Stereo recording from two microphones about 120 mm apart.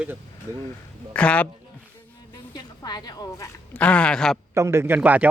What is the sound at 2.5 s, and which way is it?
Speech, 35° left (ahead or behind).